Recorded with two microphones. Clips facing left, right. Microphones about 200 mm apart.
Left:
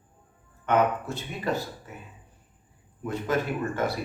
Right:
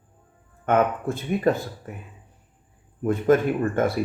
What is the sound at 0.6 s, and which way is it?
Speech, 50° right (ahead or behind).